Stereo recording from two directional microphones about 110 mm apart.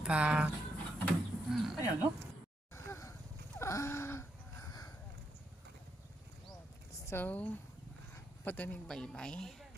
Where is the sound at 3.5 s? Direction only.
25° left (ahead or behind).